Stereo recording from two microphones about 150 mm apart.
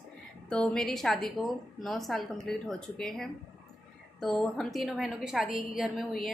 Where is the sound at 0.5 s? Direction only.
5° left (ahead or behind).